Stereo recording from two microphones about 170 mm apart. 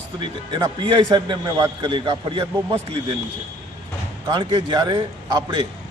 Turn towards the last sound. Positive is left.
turn(degrees=-25)  # may be behind; listen again after turning